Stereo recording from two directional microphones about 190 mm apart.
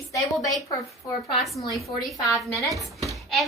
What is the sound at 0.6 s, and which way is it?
Speech, 15° left (ahead or behind).